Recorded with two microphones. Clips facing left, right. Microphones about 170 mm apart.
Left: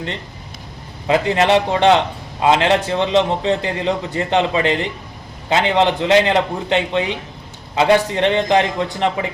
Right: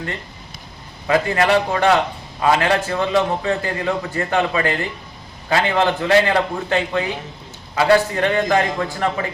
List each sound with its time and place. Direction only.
1.0 s a man's voice: 20° left (ahead or behind)